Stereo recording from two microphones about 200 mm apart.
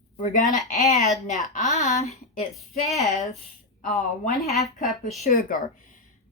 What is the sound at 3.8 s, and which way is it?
Speech, 40° left (ahead or behind).